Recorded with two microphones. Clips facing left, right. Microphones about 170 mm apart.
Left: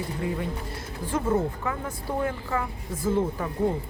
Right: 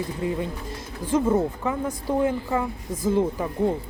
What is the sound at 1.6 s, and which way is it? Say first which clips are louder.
Speech: right 5 dB; 20° right (ahead or behind).